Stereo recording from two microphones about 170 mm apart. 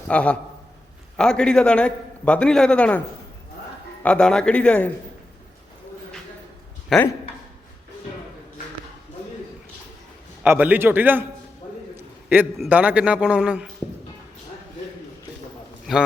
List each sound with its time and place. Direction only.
0.1 s a man's voice: 5° left (ahead or behind)
4.0 s a man's voice: 5° left (ahead or behind)
6.9 s a man's voice: centre (ahead or behind)
10.4 s a man's voice: 10° right (ahead or behind)
11.9 s a sound: 10° right (ahead or behind)
12.5 s a man's voice: 10° right (ahead or behind)
15.9 s a man's voice: centre (ahead or behind)